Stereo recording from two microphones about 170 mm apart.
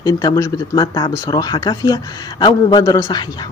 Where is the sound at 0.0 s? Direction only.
25° left (ahead or behind).